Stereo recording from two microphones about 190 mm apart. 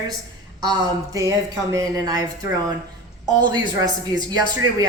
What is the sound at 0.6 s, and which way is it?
Speech, 20° right (ahead or behind).